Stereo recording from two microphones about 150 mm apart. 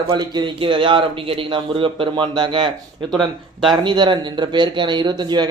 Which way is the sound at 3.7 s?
30° right (ahead or behind).